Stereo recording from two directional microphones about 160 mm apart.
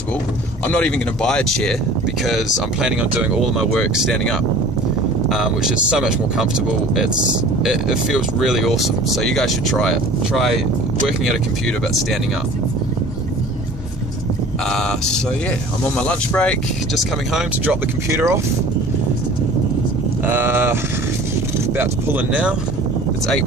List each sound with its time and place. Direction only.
0.7 s speech: 10° left (ahead or behind)
7.6 s speech: 5° right (ahead or behind)
16.0 s speech: 5° left (ahead or behind)
18.1 s speech: 15° right (ahead or behind)
20.2 s speech: 15° right (ahead or behind)
21.7 s speech: 10° right (ahead or behind)